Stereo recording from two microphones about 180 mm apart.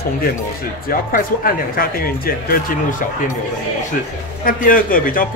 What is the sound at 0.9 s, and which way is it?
Speech, 50° left (ahead or behind).